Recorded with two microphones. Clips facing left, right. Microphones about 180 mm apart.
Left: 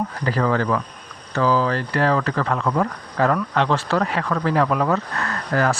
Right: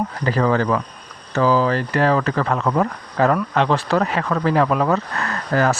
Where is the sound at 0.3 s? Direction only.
20° right (ahead or behind).